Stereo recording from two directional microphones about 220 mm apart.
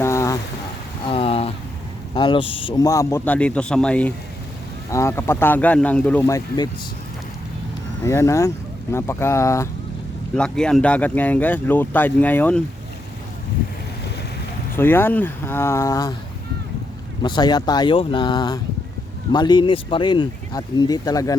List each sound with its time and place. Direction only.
0.0 s boat: 15° left (ahead or behind)
1.0 s a sound: 25° left (ahead or behind)
2.1 s speech: 20° left (ahead or behind)
8.0 s speech: 15° left (ahead or behind)
14.8 s speech: 10° left (ahead or behind)
17.2 s speech: 20° left (ahead or behind)